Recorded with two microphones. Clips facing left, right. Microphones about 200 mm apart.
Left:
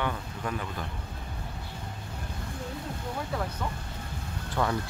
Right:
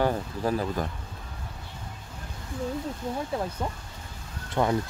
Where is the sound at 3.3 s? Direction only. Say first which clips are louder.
Right 2 dB; 25° right (ahead or behind).